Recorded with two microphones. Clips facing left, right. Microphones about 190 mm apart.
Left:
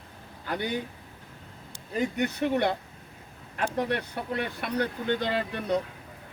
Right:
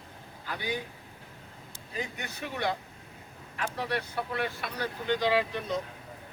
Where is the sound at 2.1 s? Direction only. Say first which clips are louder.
Left 11 dB; 60° left (ahead or behind).